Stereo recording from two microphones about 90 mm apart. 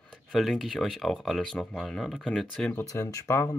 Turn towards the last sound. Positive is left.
turn(degrees=35)  # may be behind; listen again after turning